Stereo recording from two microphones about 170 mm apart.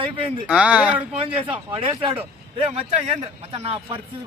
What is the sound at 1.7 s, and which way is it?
Speech, 30° right (ahead or behind).